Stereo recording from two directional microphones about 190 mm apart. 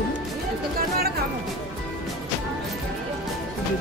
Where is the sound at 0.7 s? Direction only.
55° right (ahead or behind).